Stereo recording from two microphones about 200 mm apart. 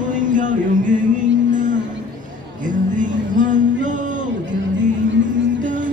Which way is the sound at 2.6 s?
40° right (ahead or behind).